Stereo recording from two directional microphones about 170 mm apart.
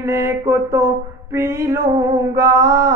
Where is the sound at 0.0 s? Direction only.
15° right (ahead or behind).